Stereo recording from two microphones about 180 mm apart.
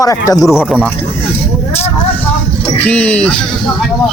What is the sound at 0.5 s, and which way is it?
Speech, 5° right (ahead or behind).